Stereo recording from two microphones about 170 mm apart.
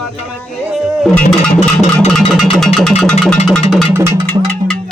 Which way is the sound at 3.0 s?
5° left (ahead or behind).